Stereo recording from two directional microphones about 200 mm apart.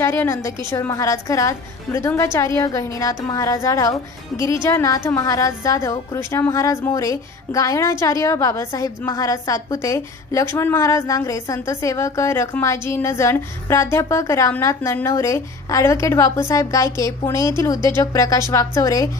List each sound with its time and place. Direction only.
0.0 s a woman's voice: 10° left (ahead or behind)